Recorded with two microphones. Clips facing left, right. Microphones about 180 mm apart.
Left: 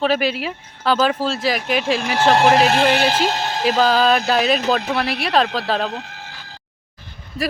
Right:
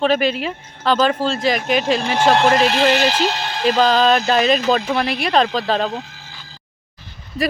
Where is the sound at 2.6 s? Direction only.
50° left (ahead or behind).